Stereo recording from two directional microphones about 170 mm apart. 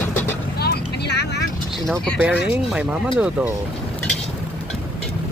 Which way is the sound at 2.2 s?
10° right (ahead or behind).